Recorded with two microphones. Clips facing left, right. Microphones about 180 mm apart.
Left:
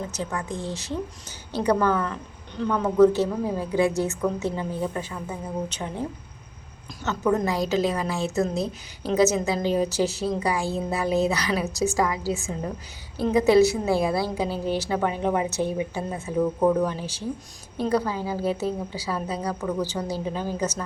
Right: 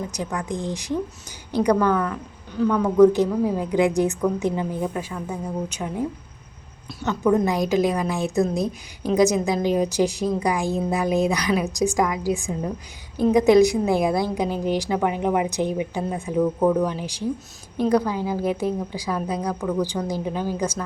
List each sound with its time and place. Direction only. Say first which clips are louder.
0.1 s a woman's voice: right 2 dB; 15° right (ahead or behind)
3.0 s a woman's voice: right 3 dB; 15° right (ahead or behind)
16.4 s speech: right 1 dB; centre (ahead or behind)
16.8 s a woman's voice: right 2 dB; 15° right (ahead or behind)
19.4 s a woman's voice: right 2 dB; 5° left (ahead or behind)
20.1 s a woman's voice: right 2 dB; 15° right (ahead or behind)